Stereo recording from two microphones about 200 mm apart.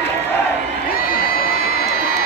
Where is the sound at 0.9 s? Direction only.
45° left (ahead or behind).